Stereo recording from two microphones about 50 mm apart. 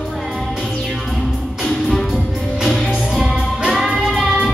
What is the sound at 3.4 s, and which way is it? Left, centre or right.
Music, centre.